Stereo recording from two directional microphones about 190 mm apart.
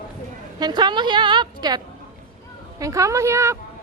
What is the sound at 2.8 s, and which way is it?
Speech, 15° right (ahead or behind).